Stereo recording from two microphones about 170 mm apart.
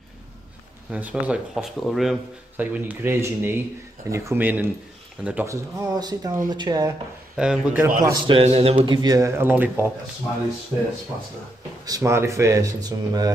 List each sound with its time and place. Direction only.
0.9 s speech: 10° right (ahead or behind); by 6.9 s 25° right (ahead or behind)
7.3 s speech: 5° right (ahead or behind)
8.0 s speech: 20° right (ahead or behind)
8.4 s speech: 35° right (ahead or behind); by 9.8 s 10° right (ahead or behind)
11.8 s speech: 20° right (ahead or behind)